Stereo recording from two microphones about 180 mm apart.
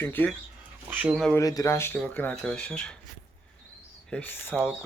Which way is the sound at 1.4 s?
20° left (ahead or behind).